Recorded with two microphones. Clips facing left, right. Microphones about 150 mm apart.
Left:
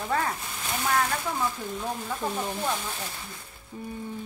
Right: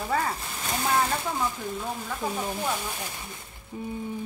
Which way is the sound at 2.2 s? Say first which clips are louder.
Even; 5° right (ahead or behind).